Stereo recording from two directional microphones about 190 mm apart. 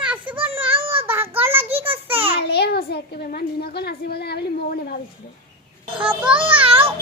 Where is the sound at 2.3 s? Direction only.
60° left (ahead or behind).